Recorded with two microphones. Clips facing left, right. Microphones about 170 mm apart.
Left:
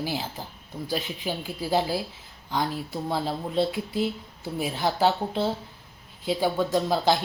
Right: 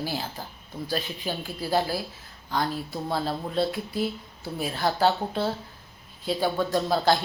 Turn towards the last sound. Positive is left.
turn(degrees=15)  # may be behind; listen again after turning